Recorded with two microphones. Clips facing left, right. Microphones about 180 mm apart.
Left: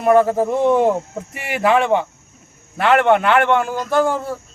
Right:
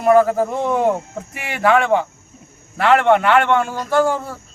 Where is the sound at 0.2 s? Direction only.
25° left (ahead or behind).